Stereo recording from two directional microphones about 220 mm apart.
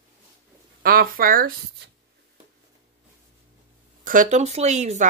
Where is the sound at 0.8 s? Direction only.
40° right (ahead or behind).